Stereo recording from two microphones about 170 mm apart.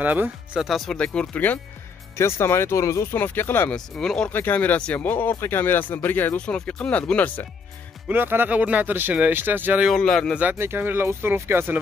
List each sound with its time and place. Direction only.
0.0 s speech: 10° right (ahead or behind); by 7.4 s 10° left (ahead or behind)
8.1 s speech: 10° right (ahead or behind)
9.9 s speech: 5° left (ahead or behind)
10.4 s speech: 10° right (ahead or behind)